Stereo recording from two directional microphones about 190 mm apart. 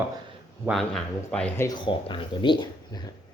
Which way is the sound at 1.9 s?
25° left (ahead or behind).